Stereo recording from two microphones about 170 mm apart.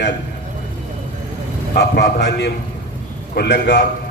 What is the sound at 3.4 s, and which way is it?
Speech, 75° left (ahead or behind).